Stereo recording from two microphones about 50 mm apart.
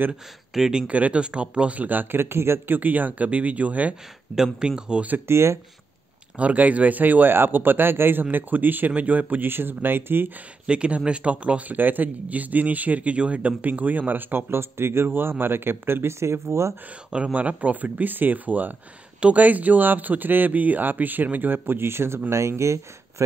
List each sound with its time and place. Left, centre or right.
0.6 s speech: centre
0.8 s a man's voice: right
2.7 s a man's voice: right
4.4 s speech: centre
5.3 s speech: right
6.3 s a man's voice: right
9.5 s speech: right
10.7 s speech: right
11.7 s a man's voice: right
17.1 s a man's voice: right
22.3 s speech: right